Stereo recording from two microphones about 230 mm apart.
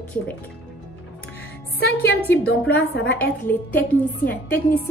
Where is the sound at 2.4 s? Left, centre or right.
Left.